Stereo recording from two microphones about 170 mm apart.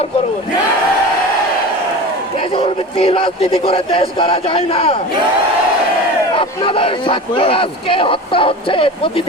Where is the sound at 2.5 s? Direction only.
30° left (ahead or behind).